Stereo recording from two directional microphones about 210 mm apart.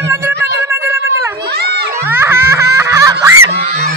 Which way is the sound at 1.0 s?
50° right (ahead or behind).